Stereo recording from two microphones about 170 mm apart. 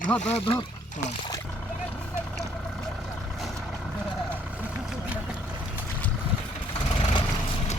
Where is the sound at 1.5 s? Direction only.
5° left (ahead or behind).